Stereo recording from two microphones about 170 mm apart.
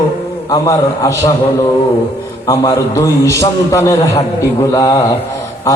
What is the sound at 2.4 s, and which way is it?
A man's voice, 20° left (ahead or behind).